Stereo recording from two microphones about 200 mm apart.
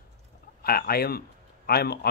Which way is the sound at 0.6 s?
50° left (ahead or behind).